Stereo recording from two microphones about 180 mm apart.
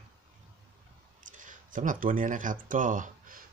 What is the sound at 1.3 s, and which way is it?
Speech, 45° right (ahead or behind).